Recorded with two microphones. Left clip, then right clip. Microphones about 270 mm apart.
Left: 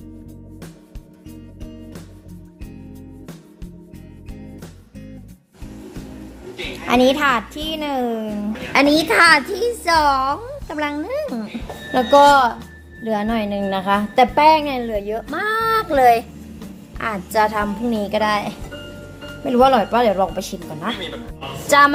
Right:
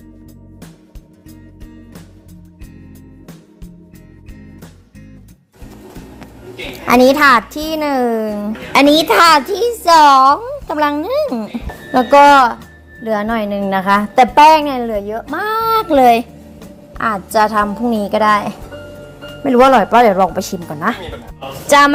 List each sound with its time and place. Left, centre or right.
7.1 s a child's voice: centre
21.7 s a woman's voice: centre